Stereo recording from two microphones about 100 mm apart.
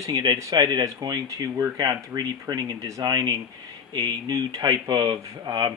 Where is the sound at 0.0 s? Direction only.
45° right (ahead or behind).